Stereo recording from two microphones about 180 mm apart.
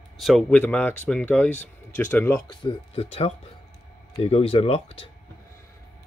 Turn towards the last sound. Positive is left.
turn(degrees=30)  # may be behind; listen again after turning